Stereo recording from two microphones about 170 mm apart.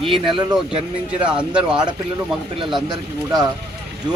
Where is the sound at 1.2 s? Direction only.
5° right (ahead or behind).